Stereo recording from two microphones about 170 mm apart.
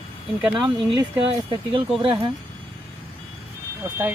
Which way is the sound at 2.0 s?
30° right (ahead or behind).